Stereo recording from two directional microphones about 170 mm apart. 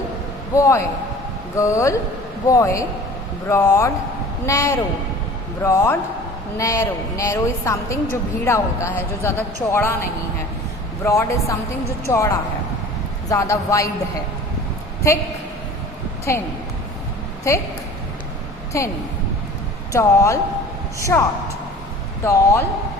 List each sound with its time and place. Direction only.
0.5 s a woman's voice: 15° left (ahead or behind)
15.1 s a woman's voice: 15° left (ahead or behind)
16.3 s a woman's voice: 15° left (ahead or behind)
17.5 s a woman's voice: 15° left (ahead or behind)
18.7 s a woman's voice: 15° left (ahead or behind)